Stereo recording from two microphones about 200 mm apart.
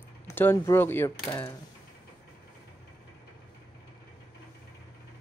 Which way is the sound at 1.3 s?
25° left (ahead or behind).